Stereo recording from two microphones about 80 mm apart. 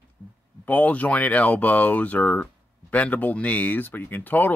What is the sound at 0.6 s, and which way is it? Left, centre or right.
Speech, centre.